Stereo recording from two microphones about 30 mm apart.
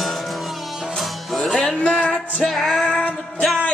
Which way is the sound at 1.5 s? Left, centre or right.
Left.